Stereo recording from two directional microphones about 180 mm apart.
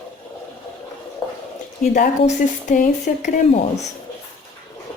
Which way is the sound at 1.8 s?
40° left (ahead or behind).